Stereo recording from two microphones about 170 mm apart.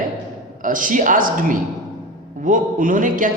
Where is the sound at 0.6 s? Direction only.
50° right (ahead or behind).